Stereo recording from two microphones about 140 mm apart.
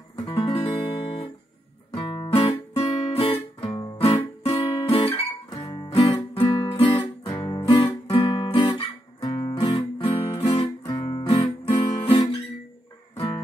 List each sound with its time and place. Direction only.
0.1 s guitar: 40° left (ahead or behind)
5.6 s music: 30° left (ahead or behind)
8.1 s guitar: 40° left (ahead or behind)